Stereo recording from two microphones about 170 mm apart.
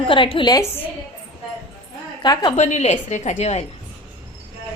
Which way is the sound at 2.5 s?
40° left (ahead or behind).